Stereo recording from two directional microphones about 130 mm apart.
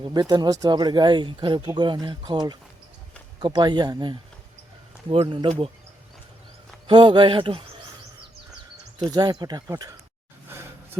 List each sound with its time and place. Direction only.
0.0 s speech: 30° right (ahead or behind)
5.3 s speech: 40° right (ahead or behind)
6.8 s speech: 40° right (ahead or behind)
9.0 s speech: 30° right (ahead or behind)